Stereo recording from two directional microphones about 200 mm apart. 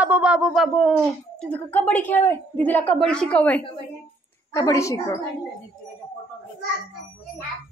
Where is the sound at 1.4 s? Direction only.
10° left (ahead or behind).